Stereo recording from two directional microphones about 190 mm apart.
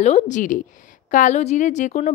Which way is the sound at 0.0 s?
35° left (ahead or behind).